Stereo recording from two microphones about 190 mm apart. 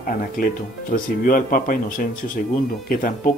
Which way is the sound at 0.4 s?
45° left (ahead or behind).